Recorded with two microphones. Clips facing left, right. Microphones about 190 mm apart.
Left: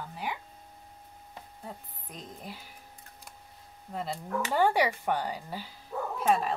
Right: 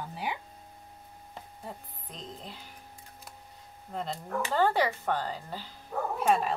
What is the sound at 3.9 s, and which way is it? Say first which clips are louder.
Speech: even; 10° left (ahead or behind).